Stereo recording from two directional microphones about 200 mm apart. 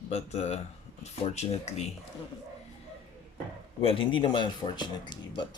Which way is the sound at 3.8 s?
25° left (ahead or behind).